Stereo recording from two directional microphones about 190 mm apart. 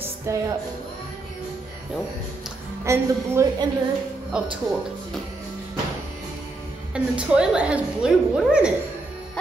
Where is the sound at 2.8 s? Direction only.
15° right (ahead or behind).